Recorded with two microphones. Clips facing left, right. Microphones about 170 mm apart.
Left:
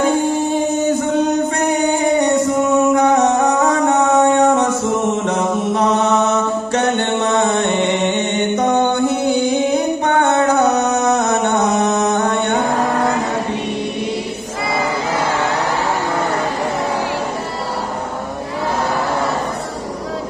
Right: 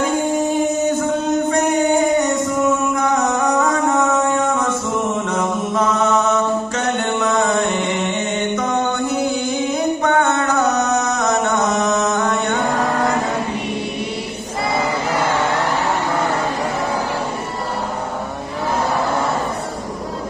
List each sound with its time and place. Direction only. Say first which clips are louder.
2.9 s music: left 5 dB; 35° left (ahead or behind)
5.3 s mantra: left 2 dB; 35° left (ahead or behind)
6.7 s music: left 3 dB; 35° left (ahead or behind)
10.0 s music: left 3 dB; 30° left (ahead or behind)